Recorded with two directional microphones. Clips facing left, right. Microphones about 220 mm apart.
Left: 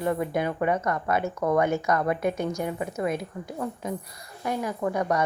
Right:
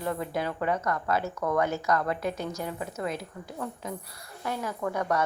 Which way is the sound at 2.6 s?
15° left (ahead or behind).